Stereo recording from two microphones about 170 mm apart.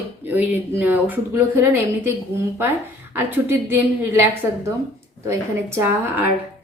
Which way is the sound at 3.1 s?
15° right (ahead or behind).